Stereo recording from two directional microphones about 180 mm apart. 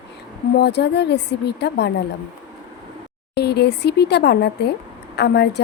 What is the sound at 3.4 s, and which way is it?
A woman's voice, 65° left (ahead or behind).